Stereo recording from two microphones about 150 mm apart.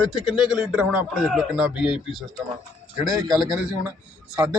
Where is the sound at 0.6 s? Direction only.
10° right (ahead or behind).